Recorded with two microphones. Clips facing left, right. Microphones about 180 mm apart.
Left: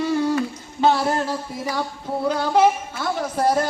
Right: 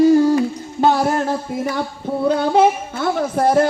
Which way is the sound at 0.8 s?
50° right (ahead or behind).